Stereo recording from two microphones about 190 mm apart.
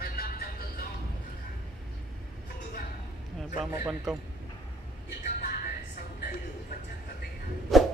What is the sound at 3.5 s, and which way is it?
Speech, 15° right (ahead or behind).